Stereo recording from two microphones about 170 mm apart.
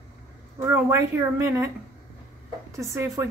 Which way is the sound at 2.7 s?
15° right (ahead or behind).